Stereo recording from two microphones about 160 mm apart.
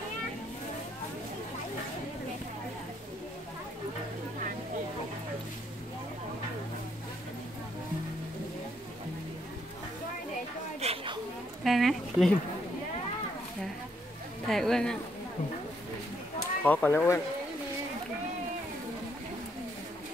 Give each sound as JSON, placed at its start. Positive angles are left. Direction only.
{"t": 10.8, "sound": "a sound", "side_deg": -40}
{"t": 11.6, "sound": "speech", "side_deg": 0}
{"t": 14.5, "sound": "speech", "side_deg": 5}
{"t": 16.6, "sound": "speech", "side_deg": 10}